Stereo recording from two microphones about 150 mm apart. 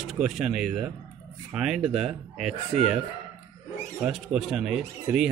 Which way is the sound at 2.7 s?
45° right (ahead or behind).